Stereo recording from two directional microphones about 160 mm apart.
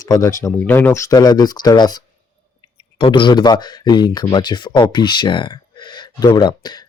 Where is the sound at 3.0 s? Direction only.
30° left (ahead or behind).